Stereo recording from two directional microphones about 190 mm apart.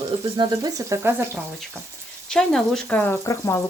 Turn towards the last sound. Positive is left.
turn(degrees=15)  # may be behind; listen again after turning